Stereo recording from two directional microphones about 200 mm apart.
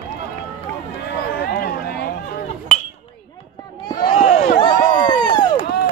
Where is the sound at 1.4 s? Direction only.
50° left (ahead or behind).